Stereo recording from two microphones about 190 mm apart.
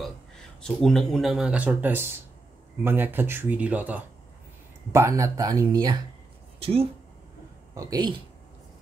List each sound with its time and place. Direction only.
0.0 s speech: 5° left (ahead or behind); by 6.9 s 30° right (ahead or behind)
7.7 s speech: 20° right (ahead or behind)